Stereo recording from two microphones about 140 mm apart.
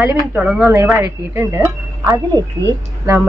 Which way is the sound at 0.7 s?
20° right (ahead or behind).